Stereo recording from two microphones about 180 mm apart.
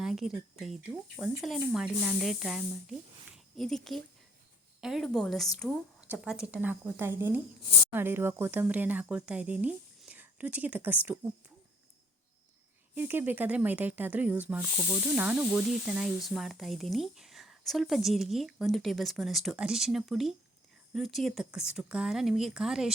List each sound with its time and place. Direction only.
0.0 s speech: centre (ahead or behind)
12.9 s speech: 10° right (ahead or behind)